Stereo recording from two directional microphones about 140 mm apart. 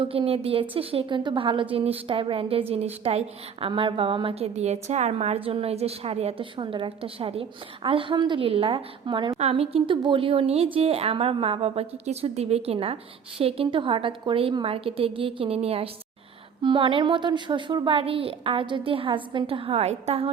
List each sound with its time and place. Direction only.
0.0 s a woman's voice: 40° right (ahead or behind)
9.4 s a woman's voice: 45° right (ahead or behind)